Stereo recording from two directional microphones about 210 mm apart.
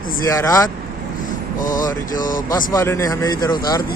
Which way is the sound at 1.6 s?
40° left (ahead or behind).